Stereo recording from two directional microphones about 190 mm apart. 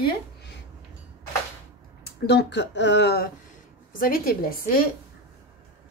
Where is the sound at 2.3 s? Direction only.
65° left (ahead or behind).